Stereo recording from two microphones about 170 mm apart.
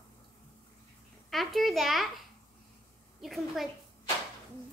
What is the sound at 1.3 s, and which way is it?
Speech, centre (ahead or behind).